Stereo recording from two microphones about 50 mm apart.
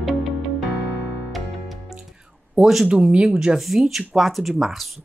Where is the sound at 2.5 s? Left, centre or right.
Centre.